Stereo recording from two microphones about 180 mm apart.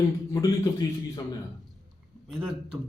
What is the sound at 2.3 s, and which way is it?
Speech, 5° right (ahead or behind).